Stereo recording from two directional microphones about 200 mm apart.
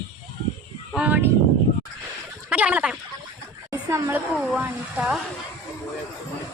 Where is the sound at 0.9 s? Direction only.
5° right (ahead or behind).